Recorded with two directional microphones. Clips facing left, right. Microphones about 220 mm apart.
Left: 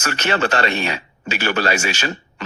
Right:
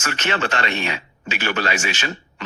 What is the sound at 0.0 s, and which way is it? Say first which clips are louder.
Speech: left 3 dB; 40° left (ahead or behind).